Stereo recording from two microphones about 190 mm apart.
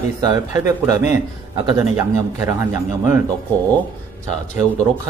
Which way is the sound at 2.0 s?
15° right (ahead or behind).